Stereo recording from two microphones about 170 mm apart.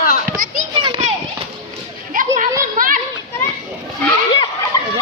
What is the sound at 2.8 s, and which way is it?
Speech, 55° right (ahead or behind).